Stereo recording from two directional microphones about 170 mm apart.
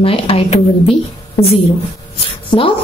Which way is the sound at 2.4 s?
30° left (ahead or behind).